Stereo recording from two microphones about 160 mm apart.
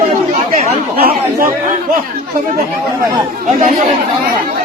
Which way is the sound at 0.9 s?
70° right (ahead or behind).